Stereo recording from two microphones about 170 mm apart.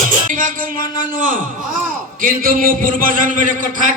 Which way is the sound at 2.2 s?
55° right (ahead or behind).